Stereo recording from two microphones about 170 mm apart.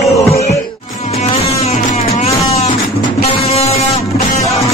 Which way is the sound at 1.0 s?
40° left (ahead or behind).